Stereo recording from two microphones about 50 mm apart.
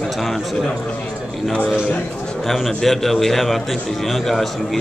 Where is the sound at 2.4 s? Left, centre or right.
Centre.